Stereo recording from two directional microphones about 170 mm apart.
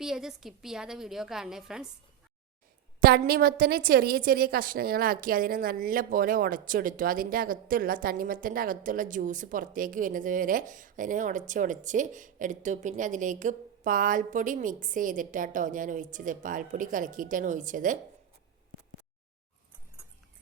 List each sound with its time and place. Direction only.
0.0 s a woman's voice: centre (ahead or behind)
3.0 s a woman's voice: 60° right (ahead or behind)